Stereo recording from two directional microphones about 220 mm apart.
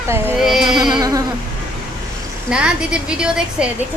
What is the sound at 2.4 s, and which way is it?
A woman's voice, 5° right (ahead or behind).